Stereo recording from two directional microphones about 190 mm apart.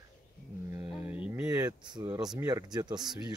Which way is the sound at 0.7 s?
10° right (ahead or behind).